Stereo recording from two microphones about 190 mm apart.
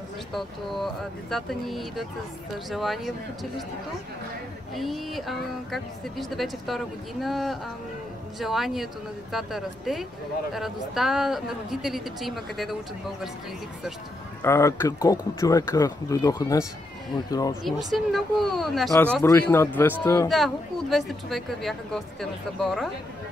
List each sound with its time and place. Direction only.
0.3 s speech: centre (ahead or behind)
4.7 s speech: centre (ahead or behind)
14.4 s speech: 15° left (ahead or behind)
17.6 s speech: centre (ahead or behind)
19.2 s speech: 15° left (ahead or behind)
20.2 s speech: centre (ahead or behind)